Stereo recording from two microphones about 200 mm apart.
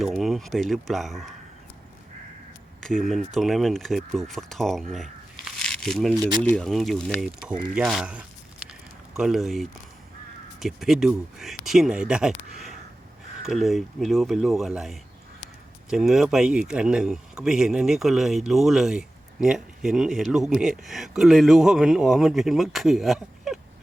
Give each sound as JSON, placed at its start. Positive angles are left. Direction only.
{"t": 0.0, "sound": "speech", "side_deg": 0}
{"t": 2.8, "sound": "speech", "side_deg": 0}
{"t": 5.5, "sound": "a sound", "side_deg": 5}
{"t": 6.1, "sound": "speech", "side_deg": -20}
{"t": 6.4, "sound": "speech", "side_deg": 5}